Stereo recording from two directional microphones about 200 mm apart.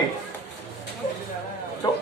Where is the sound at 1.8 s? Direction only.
20° left (ahead or behind).